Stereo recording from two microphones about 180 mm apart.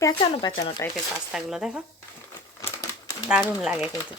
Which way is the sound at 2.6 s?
15° left (ahead or behind).